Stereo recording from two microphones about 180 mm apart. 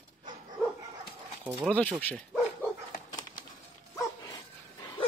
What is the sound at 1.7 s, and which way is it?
Speech, 10° left (ahead or behind).